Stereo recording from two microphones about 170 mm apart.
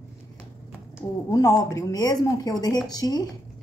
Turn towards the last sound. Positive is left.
turn(degrees=25)  # may be behind; listen again after turning